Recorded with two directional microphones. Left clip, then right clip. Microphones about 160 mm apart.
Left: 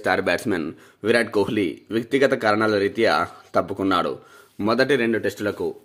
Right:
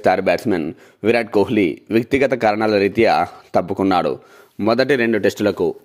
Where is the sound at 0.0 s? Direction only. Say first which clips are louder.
Right 5 dB; 40° right (ahead or behind).